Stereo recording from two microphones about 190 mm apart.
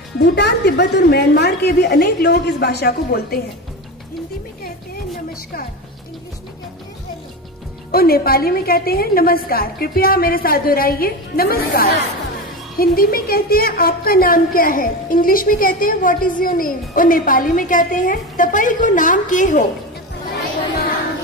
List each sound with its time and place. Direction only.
0.2 s a woman's voice: 60° left (ahead or behind)
7.9 s a woman's voice: 50° left (ahead or behind)